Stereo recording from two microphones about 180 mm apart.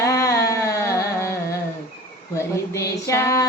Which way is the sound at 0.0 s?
15° left (ahead or behind).